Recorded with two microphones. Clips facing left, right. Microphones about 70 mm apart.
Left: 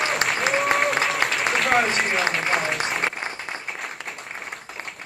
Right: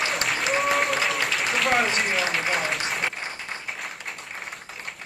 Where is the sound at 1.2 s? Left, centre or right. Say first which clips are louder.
Left 3 dB; left.